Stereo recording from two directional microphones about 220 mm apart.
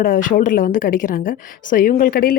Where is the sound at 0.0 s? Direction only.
40° left (ahead or behind).